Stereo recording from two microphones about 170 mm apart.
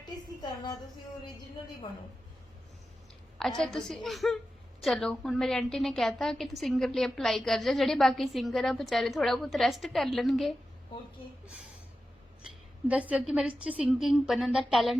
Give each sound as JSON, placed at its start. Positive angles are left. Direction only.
{"t": 3.6, "sound": "a woman's voice", "side_deg": 5}
{"t": 12.9, "sound": "a woman's voice", "side_deg": -10}